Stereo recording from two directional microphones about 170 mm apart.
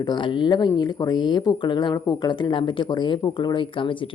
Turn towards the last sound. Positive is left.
turn(degrees=30)  # may be behind; listen again after turning